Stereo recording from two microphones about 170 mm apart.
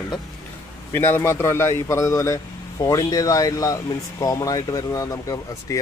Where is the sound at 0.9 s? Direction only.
15° left (ahead or behind).